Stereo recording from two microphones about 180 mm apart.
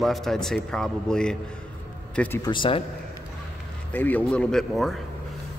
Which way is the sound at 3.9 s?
10° left (ahead or behind).